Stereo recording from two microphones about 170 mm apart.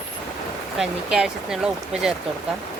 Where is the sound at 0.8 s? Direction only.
Centre (ahead or behind).